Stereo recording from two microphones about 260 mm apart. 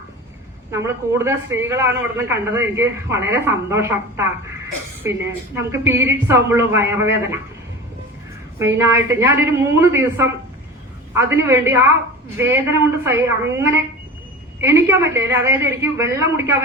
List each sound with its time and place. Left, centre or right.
0.7 s a man's voice: centre
5.5 s a man's voice: centre
8.5 s a man's voice: centre
14.6 s a man's voice: centre